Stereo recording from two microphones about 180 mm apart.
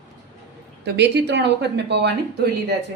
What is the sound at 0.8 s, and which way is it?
Speech, 70° right (ahead or behind).